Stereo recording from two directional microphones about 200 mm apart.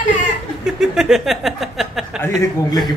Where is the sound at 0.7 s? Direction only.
Centre (ahead or behind).